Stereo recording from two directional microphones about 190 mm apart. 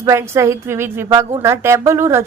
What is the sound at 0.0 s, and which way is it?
A woman's voice, 15° right (ahead or behind).